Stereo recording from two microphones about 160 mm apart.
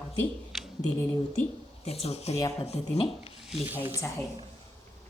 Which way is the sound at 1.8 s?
40° left (ahead or behind).